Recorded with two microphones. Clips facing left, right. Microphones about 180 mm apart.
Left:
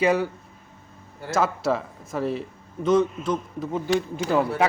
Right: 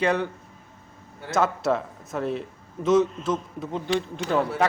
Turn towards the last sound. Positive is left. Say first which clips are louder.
# left 2 dB
turn(degrees=5)  # may be behind; listen again after turning